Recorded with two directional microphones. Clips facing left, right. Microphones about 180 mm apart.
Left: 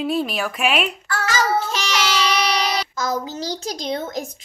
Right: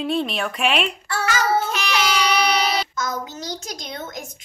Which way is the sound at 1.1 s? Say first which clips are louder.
Right 1 dB; 25° right (ahead or behind).